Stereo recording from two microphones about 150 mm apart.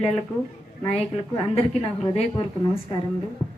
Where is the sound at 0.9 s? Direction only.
45° left (ahead or behind).